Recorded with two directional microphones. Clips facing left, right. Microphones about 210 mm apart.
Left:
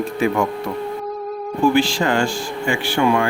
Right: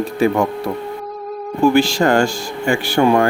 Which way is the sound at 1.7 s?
40° right (ahead or behind).